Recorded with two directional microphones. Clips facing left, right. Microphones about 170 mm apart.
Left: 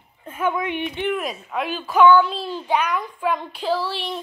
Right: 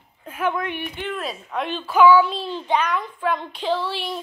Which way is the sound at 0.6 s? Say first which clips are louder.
Left 4 dB; 15° left (ahead or behind).